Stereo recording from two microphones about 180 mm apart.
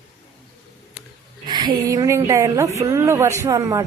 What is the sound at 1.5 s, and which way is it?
A woman's voice, 25° right (ahead or behind).